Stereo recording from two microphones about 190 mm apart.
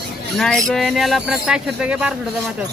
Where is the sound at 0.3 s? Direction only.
Centre (ahead or behind).